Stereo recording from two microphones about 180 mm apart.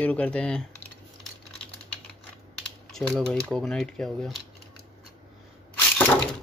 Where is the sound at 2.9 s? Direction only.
5° left (ahead or behind).